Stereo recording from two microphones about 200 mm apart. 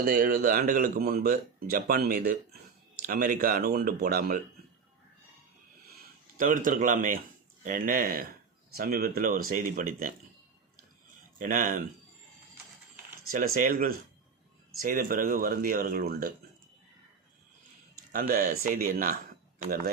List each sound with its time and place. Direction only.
0.0 s speech: 45° right (ahead or behind)
6.3 s speech: 40° right (ahead or behind)
11.3 s speech: 40° right (ahead or behind)
13.3 s speech: 45° right (ahead or behind)
18.1 s speech: 45° right (ahead or behind)